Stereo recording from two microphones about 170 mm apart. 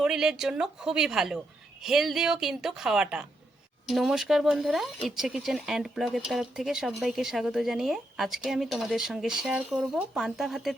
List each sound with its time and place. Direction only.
0.0 s speech: 5° right (ahead or behind)